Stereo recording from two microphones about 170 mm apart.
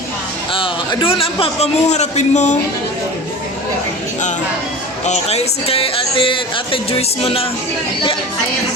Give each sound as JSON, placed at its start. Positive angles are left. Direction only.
{"t": 0.5, "sound": "a man's voice", "side_deg": 30}
{"t": 5.0, "sound": "a man's voice", "side_deg": 40}